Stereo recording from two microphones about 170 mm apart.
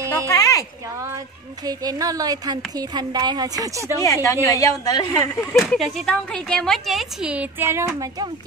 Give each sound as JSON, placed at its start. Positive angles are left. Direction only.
{"t": 0.3, "sound": "speech", "side_deg": 20}
{"t": 1.7, "sound": "a woman's voice", "side_deg": -20}
{"t": 4.0, "sound": "a woman's voice", "side_deg": 20}
{"t": 5.4, "sound": "speech", "side_deg": 5}